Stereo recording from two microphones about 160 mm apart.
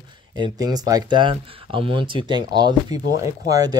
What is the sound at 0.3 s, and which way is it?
Speech, 25° right (ahead or behind).